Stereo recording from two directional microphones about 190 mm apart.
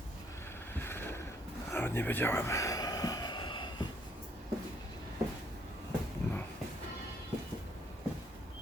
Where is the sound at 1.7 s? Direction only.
10° left (ahead or behind).